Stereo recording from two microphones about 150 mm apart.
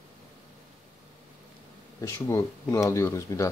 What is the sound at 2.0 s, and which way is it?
Speech, 15° left (ahead or behind).